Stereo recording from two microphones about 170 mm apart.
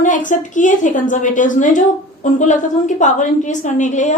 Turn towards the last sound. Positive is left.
turn(degrees=45)  # may be behind; listen again after turning